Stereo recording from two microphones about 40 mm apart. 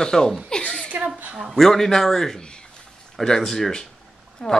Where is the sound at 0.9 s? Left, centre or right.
Right.